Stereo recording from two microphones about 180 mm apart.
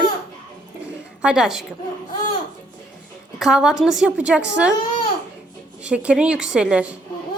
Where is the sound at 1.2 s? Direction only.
5° right (ahead or behind).